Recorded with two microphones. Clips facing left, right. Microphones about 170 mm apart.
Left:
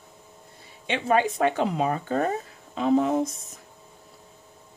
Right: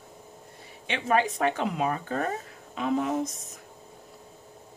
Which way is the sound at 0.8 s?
30° left (ahead or behind).